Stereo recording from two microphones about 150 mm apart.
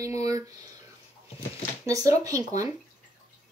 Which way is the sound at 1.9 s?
20° right (ahead or behind).